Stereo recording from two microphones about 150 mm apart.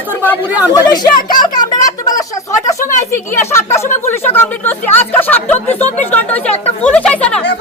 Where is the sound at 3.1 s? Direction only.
15° left (ahead or behind).